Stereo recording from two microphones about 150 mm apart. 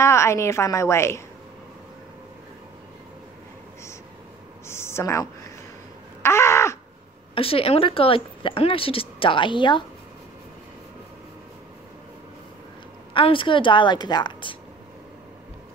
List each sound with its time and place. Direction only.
0.0 s a woman's voice: 20° left (ahead or behind)
4.6 s a sound: 15° left (ahead or behind)
7.3 s speech: 40° left (ahead or behind)
13.1 s speech: 35° left (ahead or behind)